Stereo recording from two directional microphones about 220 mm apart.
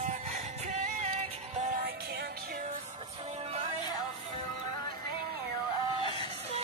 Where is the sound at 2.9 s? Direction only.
25° right (ahead or behind).